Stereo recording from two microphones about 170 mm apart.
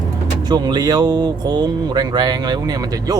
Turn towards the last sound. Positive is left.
turn(degrees=-20)  # may be behind; listen again after turning